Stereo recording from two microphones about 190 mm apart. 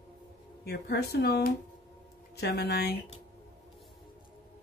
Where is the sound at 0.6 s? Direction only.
55° left (ahead or behind).